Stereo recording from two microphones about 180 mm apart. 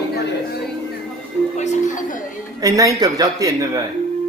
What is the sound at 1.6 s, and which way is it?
Speech, 40° left (ahead or behind).